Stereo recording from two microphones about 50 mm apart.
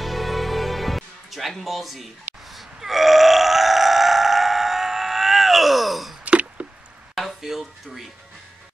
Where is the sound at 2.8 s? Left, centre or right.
Centre.